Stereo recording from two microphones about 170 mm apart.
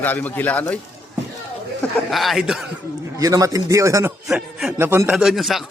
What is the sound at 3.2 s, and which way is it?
Speech, 20° right (ahead or behind).